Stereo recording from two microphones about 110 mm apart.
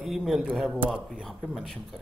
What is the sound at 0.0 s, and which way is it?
Speech, centre (ahead or behind).